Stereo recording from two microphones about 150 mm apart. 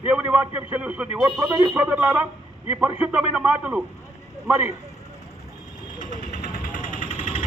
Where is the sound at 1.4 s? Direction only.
20° right (ahead or behind).